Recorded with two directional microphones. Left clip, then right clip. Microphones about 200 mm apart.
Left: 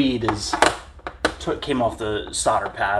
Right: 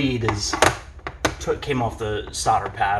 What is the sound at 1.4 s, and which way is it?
Speech, 45° left (ahead or behind).